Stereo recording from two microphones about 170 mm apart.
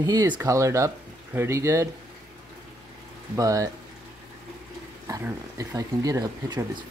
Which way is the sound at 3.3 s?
20° right (ahead or behind).